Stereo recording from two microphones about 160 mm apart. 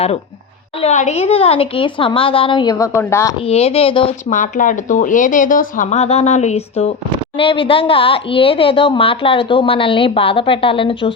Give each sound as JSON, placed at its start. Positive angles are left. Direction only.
{"t": 0.8, "sound": "a woman's voice", "side_deg": 45}
{"t": 3.3, "sound": "a woman's voice", "side_deg": 40}
{"t": 4.3, "sound": "speech", "side_deg": 55}
{"t": 7.3, "sound": "a woman's voice", "side_deg": 35}